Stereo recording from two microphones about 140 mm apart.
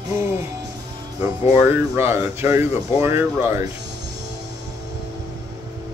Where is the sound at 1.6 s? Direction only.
15° right (ahead or behind).